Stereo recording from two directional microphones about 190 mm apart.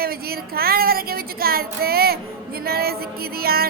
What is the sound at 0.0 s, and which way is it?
A woman's voice, 55° right (ahead or behind).